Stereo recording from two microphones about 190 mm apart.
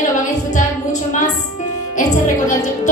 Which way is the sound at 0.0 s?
40° left (ahead or behind).